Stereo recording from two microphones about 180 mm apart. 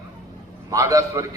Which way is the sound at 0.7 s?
20° right (ahead or behind).